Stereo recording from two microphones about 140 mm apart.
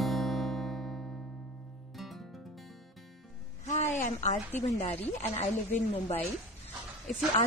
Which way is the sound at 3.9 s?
55° left (ahead or behind).